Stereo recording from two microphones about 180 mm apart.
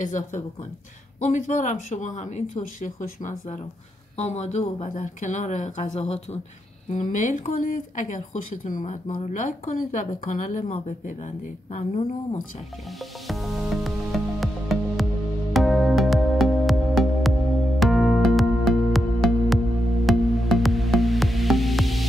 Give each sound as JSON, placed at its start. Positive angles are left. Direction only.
{"t": 0.0, "sound": "speech", "side_deg": 45}
{"t": 9.0, "sound": "speech", "side_deg": 30}
{"t": 9.3, "sound": "speech", "side_deg": 45}
{"t": 13.3, "sound": "music", "side_deg": 0}